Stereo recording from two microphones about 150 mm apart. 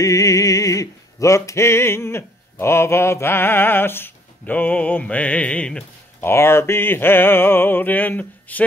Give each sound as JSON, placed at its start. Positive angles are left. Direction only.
{"t": 0.0, "sound": "music", "side_deg": 20}